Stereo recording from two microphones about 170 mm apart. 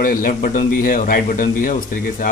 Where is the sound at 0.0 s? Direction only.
55° left (ahead or behind).